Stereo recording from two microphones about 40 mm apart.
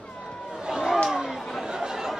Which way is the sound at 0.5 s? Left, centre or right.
Centre.